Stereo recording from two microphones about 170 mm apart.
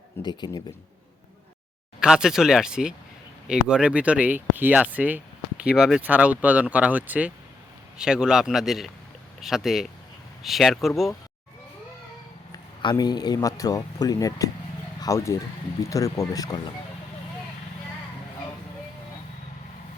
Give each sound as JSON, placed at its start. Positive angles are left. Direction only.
{"t": 0.2, "sound": "a man's voice", "side_deg": 25}
{"t": 2.0, "sound": "speech", "side_deg": -5}
{"t": 12.5, "sound": "a man's voice", "side_deg": 25}